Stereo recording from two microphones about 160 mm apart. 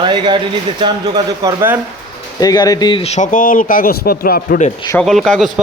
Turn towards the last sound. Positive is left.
turn(degrees=0)  # may be behind; listen again after turning